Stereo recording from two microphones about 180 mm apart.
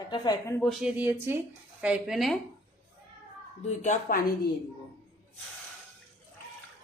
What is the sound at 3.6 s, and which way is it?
Speech, 40° left (ahead or behind).